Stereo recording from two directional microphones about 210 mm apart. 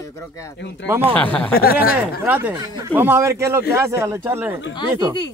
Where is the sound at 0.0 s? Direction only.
15° left (ahead or behind).